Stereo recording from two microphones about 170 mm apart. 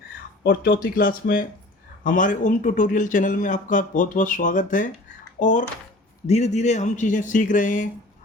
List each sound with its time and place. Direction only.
0.4 s a man's voice: 55° left (ahead or behind)